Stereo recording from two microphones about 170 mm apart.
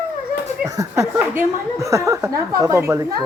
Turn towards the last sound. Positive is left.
turn(degrees=-15)  # may be behind; listen again after turning